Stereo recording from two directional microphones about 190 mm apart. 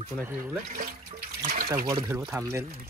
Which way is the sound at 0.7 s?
45° right (ahead or behind).